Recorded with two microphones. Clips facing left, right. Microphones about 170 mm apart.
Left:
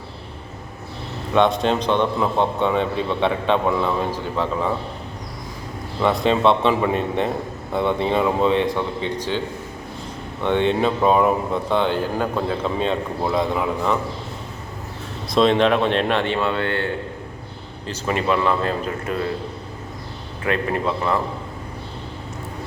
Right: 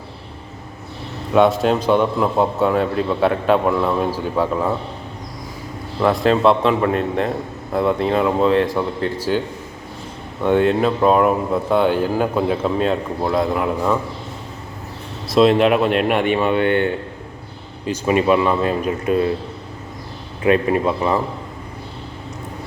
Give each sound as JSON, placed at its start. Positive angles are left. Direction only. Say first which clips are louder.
{"t": 1.3, "sound": "speech", "louder": "right 3 dB", "side_deg": -5}
{"t": 6.0, "sound": "speech", "louder": "right 3 dB", "side_deg": 0}
{"t": 10.4, "sound": "speech", "louder": "right 3 dB", "side_deg": -5}
{"t": 15.3, "sound": "a man's voice", "louder": "right 3 dB", "side_deg": -5}
{"t": 20.4, "sound": "a man's voice", "louder": "right 6 dB", "side_deg": -20}